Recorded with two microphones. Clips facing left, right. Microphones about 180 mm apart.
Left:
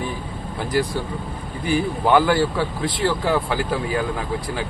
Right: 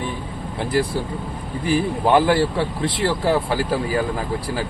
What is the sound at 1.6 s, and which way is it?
Speech, 30° right (ahead or behind).